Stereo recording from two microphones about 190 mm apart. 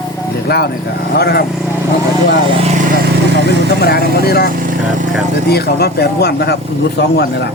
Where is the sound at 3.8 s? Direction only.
55° left (ahead or behind).